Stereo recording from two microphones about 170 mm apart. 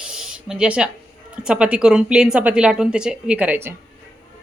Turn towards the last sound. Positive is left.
turn(degrees=-10)  # may be behind; listen again after turning